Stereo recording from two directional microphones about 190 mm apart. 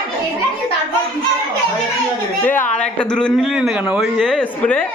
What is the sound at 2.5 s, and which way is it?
Speech, 45° left (ahead or behind).